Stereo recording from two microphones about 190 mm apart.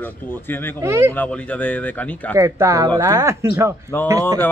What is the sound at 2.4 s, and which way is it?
Speech, 15° right (ahead or behind).